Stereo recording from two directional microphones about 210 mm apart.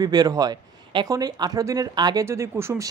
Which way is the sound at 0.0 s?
20° right (ahead or behind).